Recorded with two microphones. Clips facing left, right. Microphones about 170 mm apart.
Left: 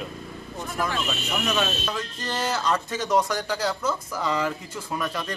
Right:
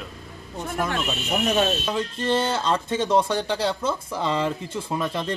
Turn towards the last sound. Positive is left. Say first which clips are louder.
# right 3 dB
turn(degrees=-25)  # may be behind; listen again after turning